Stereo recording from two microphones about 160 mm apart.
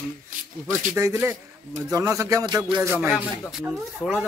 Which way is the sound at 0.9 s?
15° right (ahead or behind).